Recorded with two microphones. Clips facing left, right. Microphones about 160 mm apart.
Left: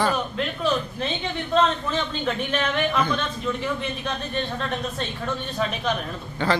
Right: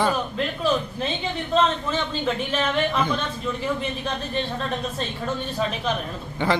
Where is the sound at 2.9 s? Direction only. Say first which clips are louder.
Even; 5° right (ahead or behind).